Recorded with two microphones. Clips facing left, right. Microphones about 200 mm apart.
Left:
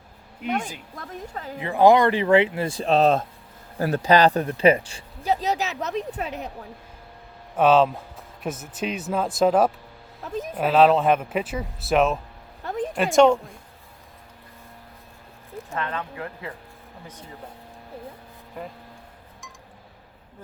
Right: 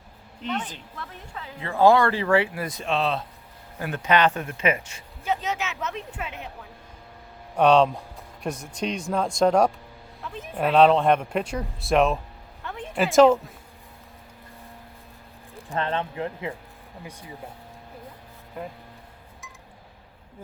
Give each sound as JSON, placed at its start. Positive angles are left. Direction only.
{"t": 0.4, "sound": "a woman's voice", "side_deg": 10}
{"t": 0.9, "sound": "speech", "side_deg": 40}
{"t": 1.5, "sound": "speech", "side_deg": 15}
{"t": 7.5, "sound": "speech", "side_deg": 5}
{"t": 10.2, "sound": "speech", "side_deg": 40}
{"t": 10.6, "sound": "speech", "side_deg": 5}
{"t": 12.6, "sound": "a sound", "side_deg": 40}
{"t": 13.0, "sound": "speech", "side_deg": 0}
{"t": 15.7, "sound": "speech", "side_deg": -30}
{"t": 17.1, "sound": "speech", "side_deg": -10}